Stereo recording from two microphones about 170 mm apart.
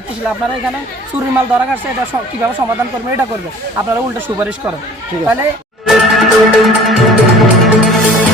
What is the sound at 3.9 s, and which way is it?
Speech, 15° right (ahead or behind).